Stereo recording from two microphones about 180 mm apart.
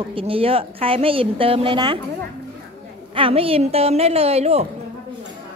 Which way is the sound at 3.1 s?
30° right (ahead or behind).